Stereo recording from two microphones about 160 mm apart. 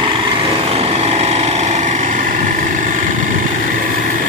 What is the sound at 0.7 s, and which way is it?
Vehicle, 40° right (ahead or behind).